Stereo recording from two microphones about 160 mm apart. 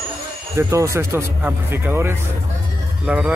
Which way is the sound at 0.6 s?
20° right (ahead or behind).